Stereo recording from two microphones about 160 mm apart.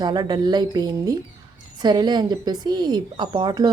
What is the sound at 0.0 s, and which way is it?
Speech, 25° right (ahead or behind).